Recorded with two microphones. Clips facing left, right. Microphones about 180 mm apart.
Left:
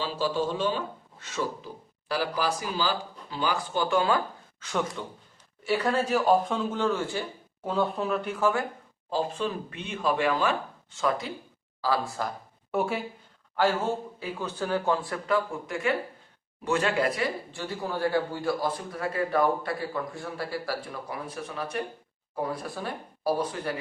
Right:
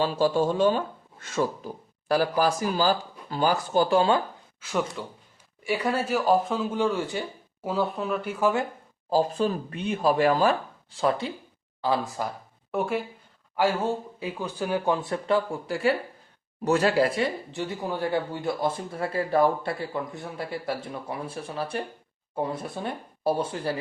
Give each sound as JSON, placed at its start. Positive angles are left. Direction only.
{"t": 0.0, "sound": "speech", "side_deg": -50}
{"t": 4.6, "sound": "speech", "side_deg": -5}
{"t": 9.0, "sound": "speech", "side_deg": -40}
{"t": 11.8, "sound": "speech", "side_deg": -20}
{"t": 12.7, "sound": "speech", "side_deg": 0}
{"t": 13.6, "sound": "speech", "side_deg": -15}